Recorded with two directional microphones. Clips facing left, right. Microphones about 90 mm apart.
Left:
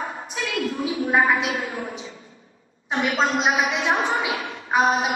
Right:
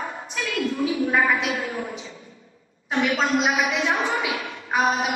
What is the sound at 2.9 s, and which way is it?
Speech, 30° left (ahead or behind).